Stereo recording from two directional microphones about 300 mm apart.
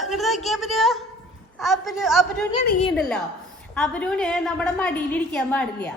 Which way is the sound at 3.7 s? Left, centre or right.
Centre.